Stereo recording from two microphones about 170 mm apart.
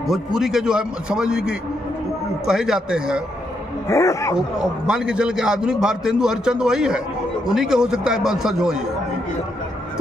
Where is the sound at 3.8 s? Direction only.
15° left (ahead or behind).